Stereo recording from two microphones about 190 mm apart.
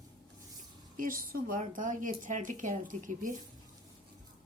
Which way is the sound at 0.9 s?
45° right (ahead or behind).